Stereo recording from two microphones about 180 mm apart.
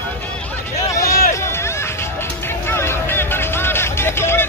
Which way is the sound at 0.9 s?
15° left (ahead or behind).